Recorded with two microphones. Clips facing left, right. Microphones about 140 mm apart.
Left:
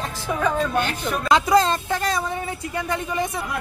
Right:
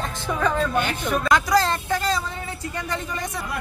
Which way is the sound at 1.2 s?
25° left (ahead or behind).